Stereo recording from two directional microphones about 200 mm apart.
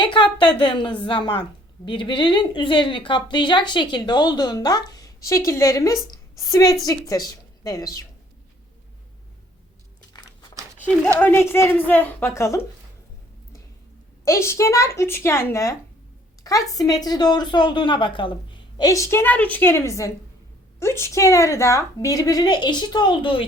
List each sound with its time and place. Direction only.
0.0 s a woman's voice: 25° left (ahead or behind)
11.2 s a woman's voice: 10° left (ahead or behind)
14.3 s a woman's voice: 15° left (ahead or behind)